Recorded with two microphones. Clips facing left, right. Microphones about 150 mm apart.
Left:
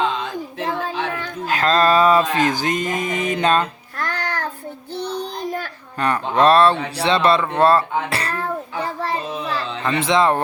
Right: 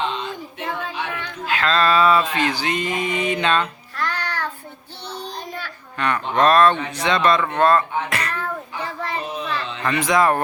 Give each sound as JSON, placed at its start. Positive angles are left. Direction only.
{"t": 1.2, "sound": "speech", "side_deg": 40}
{"t": 3.4, "sound": "babbling", "side_deg": 40}
{"t": 5.5, "sound": "a child's voice", "side_deg": 40}
{"t": 7.6, "sound": "child singing", "side_deg": 30}
{"t": 9.8, "sound": "speech", "side_deg": 25}